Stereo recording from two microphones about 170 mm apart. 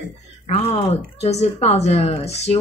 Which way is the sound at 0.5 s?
35° left (ahead or behind).